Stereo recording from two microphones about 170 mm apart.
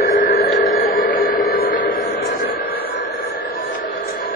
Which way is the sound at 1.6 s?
70° left (ahead or behind).